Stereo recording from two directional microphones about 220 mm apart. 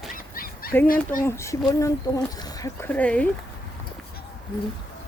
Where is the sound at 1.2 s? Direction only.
10° left (ahead or behind).